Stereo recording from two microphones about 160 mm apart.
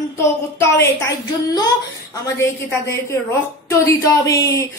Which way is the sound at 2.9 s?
15° left (ahead or behind).